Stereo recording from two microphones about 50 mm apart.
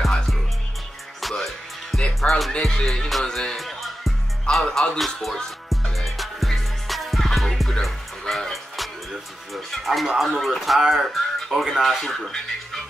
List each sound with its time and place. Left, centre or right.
0.0 s music: centre
1.4 s music: centre
2.6 s speech: centre
3.3 s music: centre
3.5 s music: centre
4.6 s speech: centre
4.9 s music: centre
9.5 s speech: centre
12.0 s speech: centre